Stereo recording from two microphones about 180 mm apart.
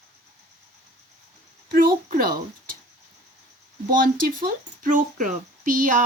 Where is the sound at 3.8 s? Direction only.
50° right (ahead or behind).